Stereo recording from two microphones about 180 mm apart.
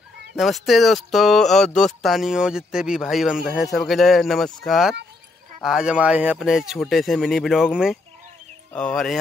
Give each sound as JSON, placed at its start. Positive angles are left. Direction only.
{"t": 0.4, "sound": "speech", "side_deg": 0}